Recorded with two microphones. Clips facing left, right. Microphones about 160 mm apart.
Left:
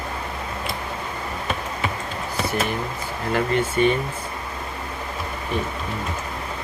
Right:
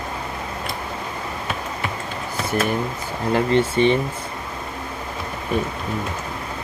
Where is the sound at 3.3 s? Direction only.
30° right (ahead or behind).